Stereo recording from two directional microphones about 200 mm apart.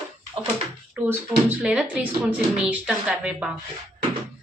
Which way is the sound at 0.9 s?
10° right (ahead or behind).